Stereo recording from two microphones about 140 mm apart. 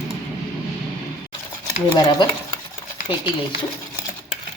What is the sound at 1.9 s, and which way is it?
Speech, 30° left (ahead or behind).